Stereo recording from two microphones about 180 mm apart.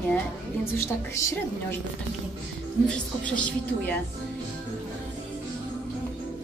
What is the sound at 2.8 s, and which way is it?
Speech, 5° left (ahead or behind).